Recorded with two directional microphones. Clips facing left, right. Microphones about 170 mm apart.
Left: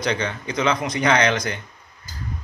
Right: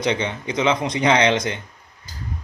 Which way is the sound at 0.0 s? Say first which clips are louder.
Right 2 dB; 20° right (ahead or behind).